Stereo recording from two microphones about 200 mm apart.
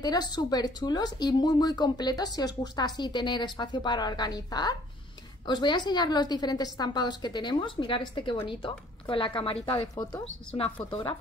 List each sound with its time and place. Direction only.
0.0 s speech: 20° left (ahead or behind)